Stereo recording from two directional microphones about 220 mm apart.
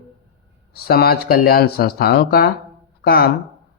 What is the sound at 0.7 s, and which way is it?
Speech, 45° left (ahead or behind).